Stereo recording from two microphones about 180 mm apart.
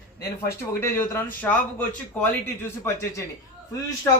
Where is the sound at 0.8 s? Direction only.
15° left (ahead or behind).